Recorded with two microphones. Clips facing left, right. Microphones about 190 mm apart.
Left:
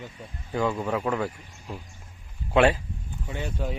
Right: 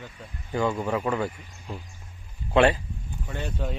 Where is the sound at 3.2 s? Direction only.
15° left (ahead or behind).